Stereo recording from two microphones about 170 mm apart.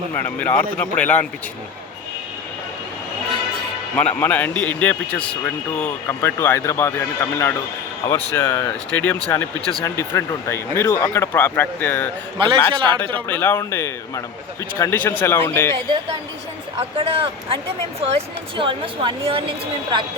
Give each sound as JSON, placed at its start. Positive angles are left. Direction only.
{"t": 0.1, "sound": "speech", "side_deg": 10}
{"t": 3.9, "sound": "speech", "side_deg": 10}
{"t": 12.4, "sound": "a woman's voice", "side_deg": -30}
{"t": 13.2, "sound": "speech", "side_deg": 10}
{"t": 17.0, "sound": "a woman's voice", "side_deg": -35}